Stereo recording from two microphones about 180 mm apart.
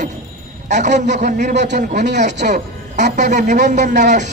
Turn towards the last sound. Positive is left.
turn(degrees=-40)  # may be behind; listen again after turning